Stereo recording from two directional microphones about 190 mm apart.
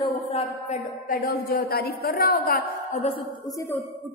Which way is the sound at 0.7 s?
50° left (ahead or behind).